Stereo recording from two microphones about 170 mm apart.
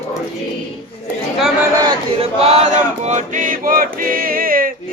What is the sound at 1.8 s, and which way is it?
Chant, 35° right (ahead or behind).